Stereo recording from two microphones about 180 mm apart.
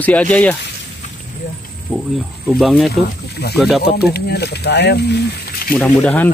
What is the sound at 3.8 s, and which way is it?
Speech, 65° left (ahead or behind).